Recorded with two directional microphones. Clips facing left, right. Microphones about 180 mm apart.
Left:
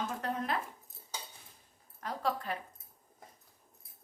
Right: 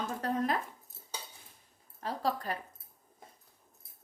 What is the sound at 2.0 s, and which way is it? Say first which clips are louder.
Speech: right 2 dB; 35° right (ahead or behind).